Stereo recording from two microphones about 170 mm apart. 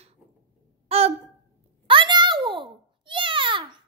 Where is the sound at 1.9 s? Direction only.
30° right (ahead or behind).